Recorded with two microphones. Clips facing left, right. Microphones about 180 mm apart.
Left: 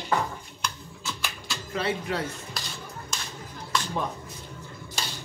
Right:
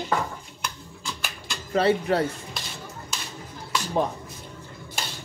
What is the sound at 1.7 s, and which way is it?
Speech, 35° right (ahead or behind).